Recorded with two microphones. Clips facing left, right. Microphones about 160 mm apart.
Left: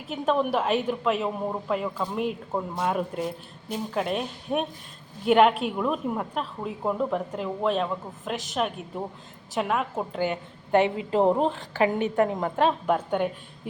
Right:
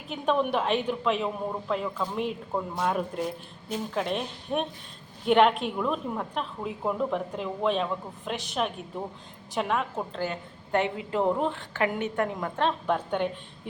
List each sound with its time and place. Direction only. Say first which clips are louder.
0.1 s a woman's voice: left 1 dB; centre (ahead or behind); by 11.8 s 35° left (ahead or behind)
12.0 s a woman's voice: left 5 dB; 20° left (ahead or behind)
12.6 s a woman's voice: left 2 dB; 10° left (ahead or behind)